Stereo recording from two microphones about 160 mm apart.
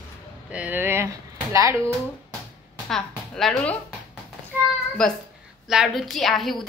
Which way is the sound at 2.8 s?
5° left (ahead or behind).